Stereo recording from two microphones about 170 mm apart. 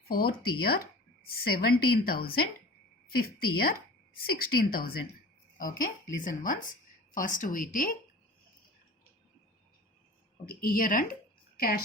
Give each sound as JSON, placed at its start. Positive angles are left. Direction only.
{"t": 0.1, "sound": "a woman's voice", "side_deg": 65}
{"t": 10.4, "sound": "speech", "side_deg": 60}